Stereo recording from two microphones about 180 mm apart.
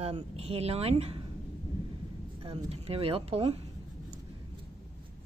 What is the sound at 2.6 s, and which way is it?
Speech, 35° right (ahead or behind).